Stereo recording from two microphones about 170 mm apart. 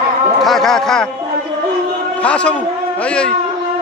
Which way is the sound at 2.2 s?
5° left (ahead or behind).